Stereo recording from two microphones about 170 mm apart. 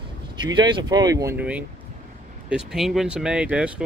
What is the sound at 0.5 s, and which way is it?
Speech, 25° right (ahead or behind).